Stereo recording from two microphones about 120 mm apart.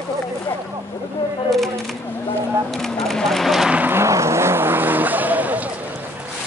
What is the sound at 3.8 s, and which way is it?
Vehicle, 20° right (ahead or behind).